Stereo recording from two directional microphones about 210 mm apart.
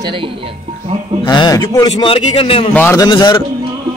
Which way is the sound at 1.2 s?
20° left (ahead or behind).